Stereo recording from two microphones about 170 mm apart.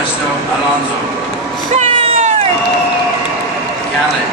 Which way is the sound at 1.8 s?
40° right (ahead or behind).